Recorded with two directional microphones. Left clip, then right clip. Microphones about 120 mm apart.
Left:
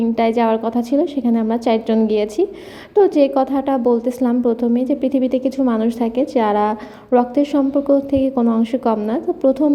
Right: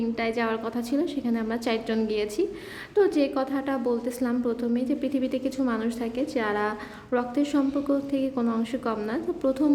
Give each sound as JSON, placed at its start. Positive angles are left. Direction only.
{"t": 0.2, "sound": "a woman's voice", "side_deg": 45}